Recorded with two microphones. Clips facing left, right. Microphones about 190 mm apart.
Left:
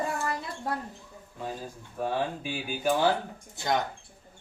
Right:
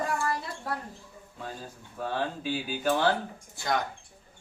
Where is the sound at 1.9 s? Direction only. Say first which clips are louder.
Left 2 dB; 15° left (ahead or behind).